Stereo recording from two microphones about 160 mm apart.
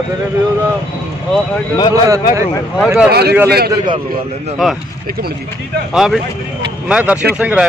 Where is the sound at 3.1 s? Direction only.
90° right.